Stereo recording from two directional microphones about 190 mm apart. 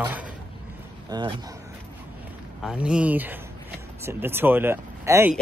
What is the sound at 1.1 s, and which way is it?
Speech, 20° right (ahead or behind).